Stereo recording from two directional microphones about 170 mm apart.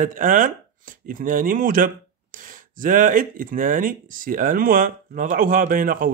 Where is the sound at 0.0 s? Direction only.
55° right (ahead or behind).